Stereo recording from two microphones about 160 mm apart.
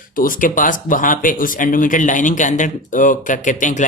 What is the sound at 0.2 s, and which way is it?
Speech, 60° left (ahead or behind).